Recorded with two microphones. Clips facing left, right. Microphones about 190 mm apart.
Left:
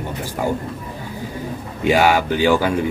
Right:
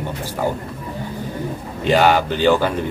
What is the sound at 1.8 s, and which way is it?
Speech, 10° left (ahead or behind).